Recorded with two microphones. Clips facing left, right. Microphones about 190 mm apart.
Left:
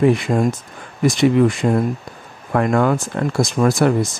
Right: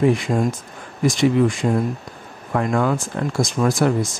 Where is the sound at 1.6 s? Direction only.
50° left (ahead or behind).